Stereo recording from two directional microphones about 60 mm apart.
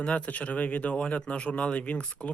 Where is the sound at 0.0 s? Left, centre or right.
Centre.